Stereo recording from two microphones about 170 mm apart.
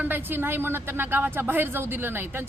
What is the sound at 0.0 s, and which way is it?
Speech, 10° right (ahead or behind).